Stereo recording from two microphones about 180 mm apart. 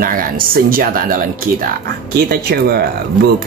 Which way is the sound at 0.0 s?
50° right (ahead or behind).